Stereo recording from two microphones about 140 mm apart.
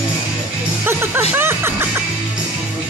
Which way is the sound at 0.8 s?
15° right (ahead or behind).